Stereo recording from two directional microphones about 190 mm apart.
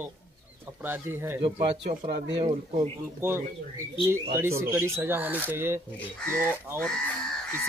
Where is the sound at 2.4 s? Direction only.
15° right (ahead or behind).